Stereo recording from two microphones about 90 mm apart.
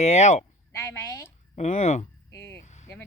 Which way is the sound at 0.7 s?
30° left (ahead or behind).